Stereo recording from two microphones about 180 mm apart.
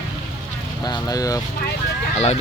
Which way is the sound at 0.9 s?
20° left (ahead or behind).